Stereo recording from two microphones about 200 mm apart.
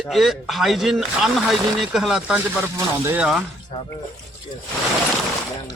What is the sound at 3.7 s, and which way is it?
Speech, 20° left (ahead or behind).